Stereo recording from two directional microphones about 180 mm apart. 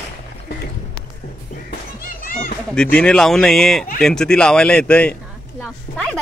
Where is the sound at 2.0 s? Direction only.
55° left (ahead or behind).